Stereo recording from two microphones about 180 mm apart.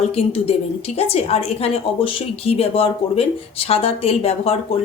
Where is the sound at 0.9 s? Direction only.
35° left (ahead or behind).